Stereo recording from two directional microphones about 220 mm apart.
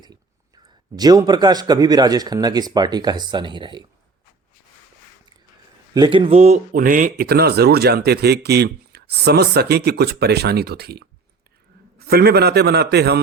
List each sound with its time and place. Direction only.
0.0 s a man's voice: 20° right (ahead or behind)
5.9 s speech: 20° right (ahead or behind); by 13.1 s 50° right (ahead or behind)